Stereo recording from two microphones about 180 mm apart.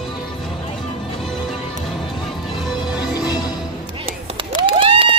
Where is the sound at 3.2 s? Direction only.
20° left (ahead or behind).